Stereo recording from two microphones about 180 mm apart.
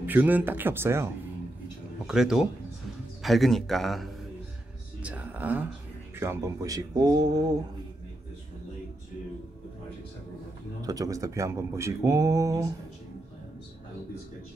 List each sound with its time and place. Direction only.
0.0 s speech: 10° right (ahead or behind)
2.0 s a man's voice: 5° right (ahead or behind)
5.0 s music: 5° right (ahead or behind)
6.1 s speech: 15° right (ahead or behind)
10.8 s speech: 20° right (ahead or behind)